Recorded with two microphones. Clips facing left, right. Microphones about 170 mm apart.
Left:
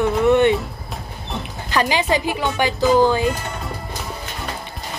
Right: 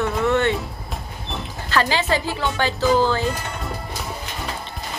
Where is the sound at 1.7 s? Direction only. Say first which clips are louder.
Left 2 dB; 15° left (ahead or behind).